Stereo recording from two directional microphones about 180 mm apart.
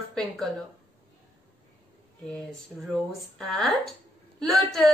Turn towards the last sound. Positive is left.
turn(degrees=0)  # may be behind; listen again after turning